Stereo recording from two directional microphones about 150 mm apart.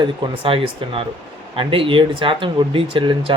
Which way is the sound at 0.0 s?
35° right (ahead or behind).